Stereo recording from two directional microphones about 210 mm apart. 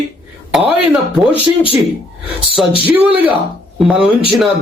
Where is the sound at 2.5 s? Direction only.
25° left (ahead or behind).